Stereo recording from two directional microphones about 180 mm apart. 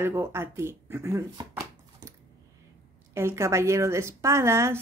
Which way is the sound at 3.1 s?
15° right (ahead or behind).